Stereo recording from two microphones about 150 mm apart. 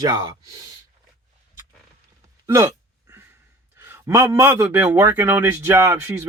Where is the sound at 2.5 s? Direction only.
20° right (ahead or behind).